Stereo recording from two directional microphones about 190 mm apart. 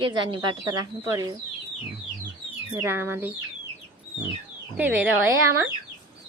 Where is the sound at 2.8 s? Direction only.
10° right (ahead or behind).